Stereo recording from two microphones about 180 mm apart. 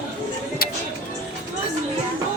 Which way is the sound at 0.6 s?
60° left (ahead or behind).